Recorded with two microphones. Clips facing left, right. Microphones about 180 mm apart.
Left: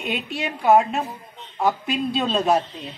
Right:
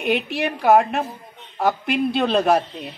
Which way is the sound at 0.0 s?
65° right (ahead or behind).